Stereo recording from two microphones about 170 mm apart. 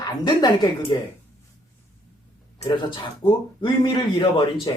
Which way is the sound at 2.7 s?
30° left (ahead or behind).